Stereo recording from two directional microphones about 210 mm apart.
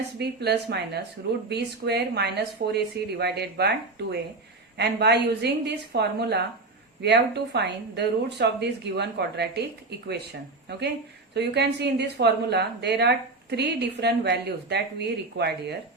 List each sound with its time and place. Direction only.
0.2 s a woman's voice: 50° right (ahead or behind)
10.7 s a woman's voice: 50° right (ahead or behind)